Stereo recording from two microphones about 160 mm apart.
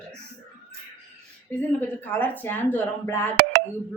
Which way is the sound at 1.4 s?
10° left (ahead or behind).